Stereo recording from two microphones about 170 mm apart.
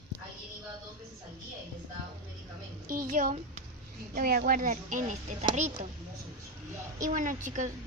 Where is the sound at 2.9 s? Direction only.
55° right (ahead or behind).